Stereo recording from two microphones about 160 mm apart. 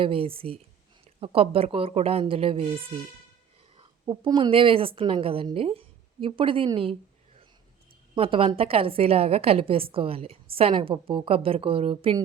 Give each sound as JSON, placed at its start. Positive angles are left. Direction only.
{"t": 0.0, "sound": "a woman's voice", "side_deg": -35}
{"t": 3.8, "sound": "a woman's voice", "side_deg": -30}
{"t": 8.1, "sound": "a woman's voice", "side_deg": -35}